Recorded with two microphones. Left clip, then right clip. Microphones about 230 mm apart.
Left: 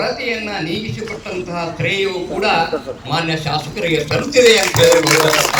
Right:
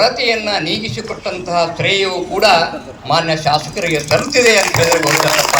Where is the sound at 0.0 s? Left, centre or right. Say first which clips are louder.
Right 6 dB; right; by 4.6 s centre.